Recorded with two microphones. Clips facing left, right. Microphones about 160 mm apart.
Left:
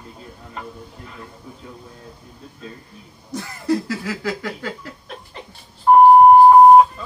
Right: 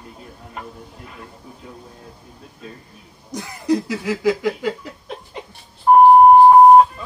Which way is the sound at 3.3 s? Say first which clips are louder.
Right 1 dB; 15° right (ahead or behind).